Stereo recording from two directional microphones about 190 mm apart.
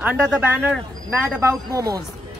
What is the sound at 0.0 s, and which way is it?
Speech, 10° right (ahead or behind).